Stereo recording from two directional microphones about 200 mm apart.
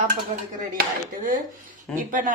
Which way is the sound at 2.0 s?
40° right (ahead or behind).